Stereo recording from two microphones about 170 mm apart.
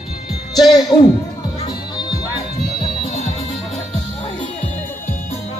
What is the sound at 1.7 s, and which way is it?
Music, 25° left (ahead or behind).